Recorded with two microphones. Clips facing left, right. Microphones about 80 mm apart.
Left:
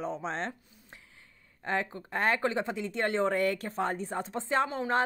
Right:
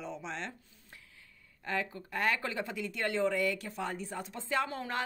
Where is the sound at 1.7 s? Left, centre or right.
Left.